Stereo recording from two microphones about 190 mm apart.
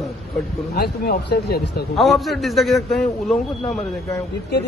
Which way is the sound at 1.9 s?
Centre (ahead or behind).